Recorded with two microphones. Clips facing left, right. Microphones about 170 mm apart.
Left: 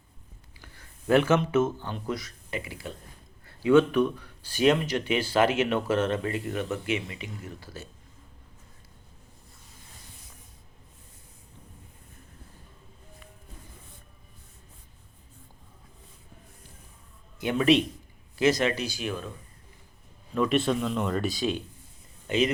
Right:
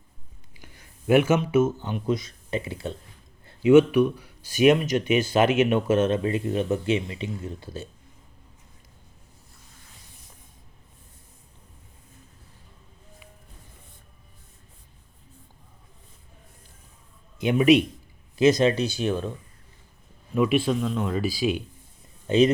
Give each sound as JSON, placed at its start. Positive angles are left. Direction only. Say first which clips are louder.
{"t": 0.6, "sound": "a sound", "louder": "right 3 dB", "side_deg": -15}
{"t": 1.8, "sound": "speech", "louder": "right 6 dB", "side_deg": -20}
{"t": 17.4, "sound": "speech", "louder": "right 4 dB", "side_deg": -15}
{"t": 20.3, "sound": "speech", "louder": "right 3 dB", "side_deg": -10}
{"t": 22.3, "sound": "speech", "louder": "right 6 dB", "side_deg": -30}